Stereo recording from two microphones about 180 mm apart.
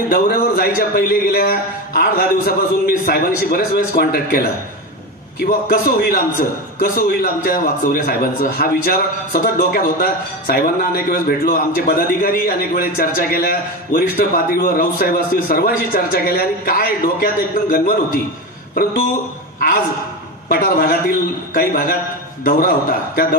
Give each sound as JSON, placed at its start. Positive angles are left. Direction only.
{"t": 0.1, "sound": "a man's voice", "side_deg": 55}
{"t": 20.4, "sound": "a man's voice", "side_deg": 55}